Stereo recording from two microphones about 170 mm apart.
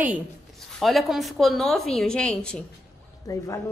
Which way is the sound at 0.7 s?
Centre (ahead or behind).